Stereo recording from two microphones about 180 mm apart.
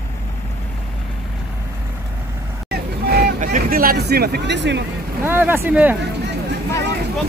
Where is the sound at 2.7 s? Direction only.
60° right (ahead or behind).